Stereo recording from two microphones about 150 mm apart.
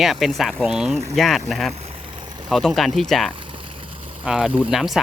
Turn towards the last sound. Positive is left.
turn(degrees=0)  # may be behind; listen again after turning